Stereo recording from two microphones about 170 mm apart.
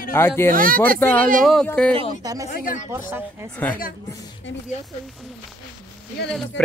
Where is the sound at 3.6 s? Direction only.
10° left (ahead or behind).